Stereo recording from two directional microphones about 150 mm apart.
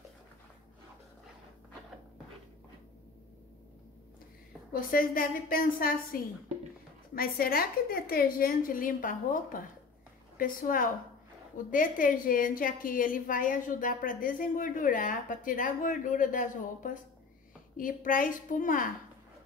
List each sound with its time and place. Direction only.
4.7 s a woman's voice: 70° left (ahead or behind)
7.2 s a woman's voice: 85° left; by 18.9 s 60° left (ahead or behind)